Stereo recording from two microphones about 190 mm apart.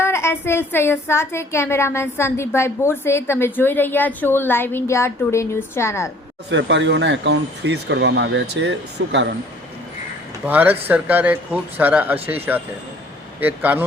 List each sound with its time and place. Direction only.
0.0 s a woman's voice: 15° left (ahead or behind)
6.5 s speech: 70° right (ahead or behind)
10.4 s speech: 10° right (ahead or behind)